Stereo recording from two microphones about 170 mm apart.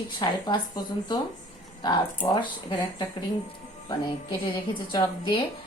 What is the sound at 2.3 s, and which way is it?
Speech, 25° left (ahead or behind).